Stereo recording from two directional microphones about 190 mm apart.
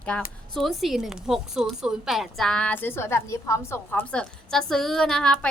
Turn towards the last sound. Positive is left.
turn(degrees=5)  # may be behind; listen again after turning